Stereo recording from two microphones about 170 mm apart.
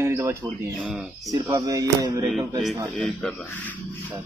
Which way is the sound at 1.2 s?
20° right (ahead or behind).